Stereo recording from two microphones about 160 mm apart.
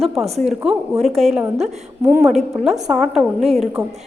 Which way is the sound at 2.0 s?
15° right (ahead or behind).